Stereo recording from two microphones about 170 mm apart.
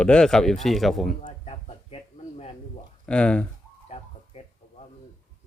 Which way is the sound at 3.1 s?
5° left (ahead or behind).